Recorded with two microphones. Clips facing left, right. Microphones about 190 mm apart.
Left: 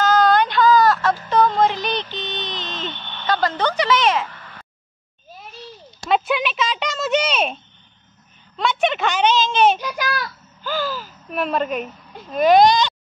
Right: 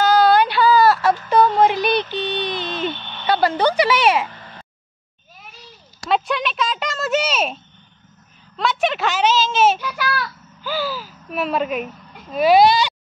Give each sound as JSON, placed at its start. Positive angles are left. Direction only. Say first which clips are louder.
{"t": 0.0, "sound": "a sound", "louder": "right 2 dB", "side_deg": -10}
{"t": 4.3, "sound": "a sound", "louder": "right 2 dB", "side_deg": -25}
{"t": 6.0, "sound": "speech", "louder": "left 1 dB", "side_deg": 0}
{"t": 8.5, "sound": "a woman's voice", "louder": "even", "side_deg": 0}
{"t": 9.8, "sound": "speech", "louder": "right 1 dB", "side_deg": 15}
{"t": 10.6, "sound": "speech", "louder": "even", "side_deg": -10}